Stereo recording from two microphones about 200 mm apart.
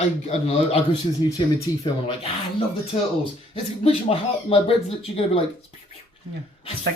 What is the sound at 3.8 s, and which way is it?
Speech, 30° left (ahead or behind).